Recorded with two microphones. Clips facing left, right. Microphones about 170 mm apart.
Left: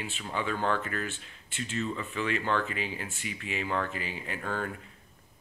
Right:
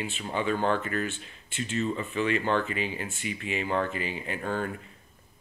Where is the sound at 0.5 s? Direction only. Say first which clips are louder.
Right 2 dB; 25° right (ahead or behind).